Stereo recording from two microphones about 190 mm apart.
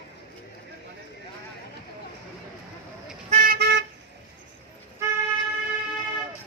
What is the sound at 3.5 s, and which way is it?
Toot, 60° right (ahead or behind).